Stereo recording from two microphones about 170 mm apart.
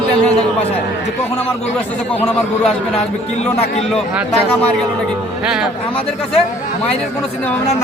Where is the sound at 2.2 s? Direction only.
5° left (ahead or behind).